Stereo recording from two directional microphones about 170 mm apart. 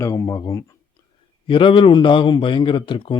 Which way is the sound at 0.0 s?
15° left (ahead or behind).